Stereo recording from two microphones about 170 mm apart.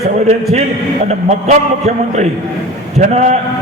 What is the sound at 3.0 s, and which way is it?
Speech, 40° right (ahead or behind).